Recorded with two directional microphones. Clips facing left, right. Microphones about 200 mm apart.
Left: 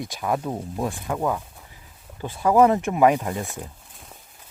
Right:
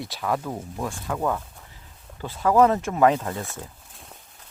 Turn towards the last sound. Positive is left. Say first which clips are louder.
# even
turn(degrees=0)  # may be behind; listen again after turning